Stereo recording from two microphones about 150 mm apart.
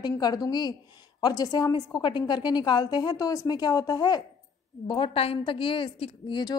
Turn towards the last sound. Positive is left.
turn(degrees=30)  # may be behind; listen again after turning